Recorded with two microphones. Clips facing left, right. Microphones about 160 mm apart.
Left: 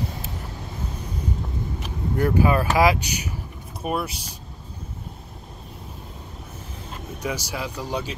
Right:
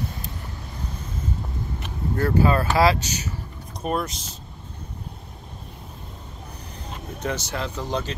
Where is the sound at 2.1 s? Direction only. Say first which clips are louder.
Even; 15° left (ahead or behind).